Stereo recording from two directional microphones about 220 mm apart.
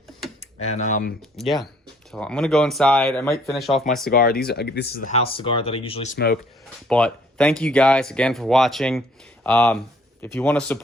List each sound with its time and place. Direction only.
0.6 s speech: 35° left (ahead or behind)
2.1 s speech: 5° left (ahead or behind)
3.5 s speech: centre (ahead or behind)
4.1 s speech: 45° left (ahead or behind); by 6.1 s 25° left (ahead or behind)
6.1 s speech: 45° left (ahead or behind)
6.8 s speech: 5° left (ahead or behind)